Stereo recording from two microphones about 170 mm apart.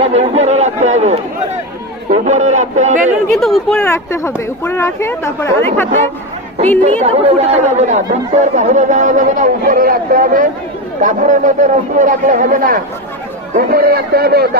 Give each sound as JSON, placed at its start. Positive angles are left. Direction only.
{"t": 0.0, "sound": "a man's voice", "side_deg": -40}
{"t": 3.3, "sound": "speech", "side_deg": 0}
{"t": 3.8, "sound": "speech", "side_deg": 15}
{"t": 6.8, "sound": "a man's voice", "side_deg": -40}